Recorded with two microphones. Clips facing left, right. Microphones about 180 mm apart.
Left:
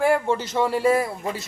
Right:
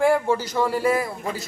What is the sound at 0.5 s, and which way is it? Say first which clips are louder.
Speech: left 3 dB; centre (ahead or behind).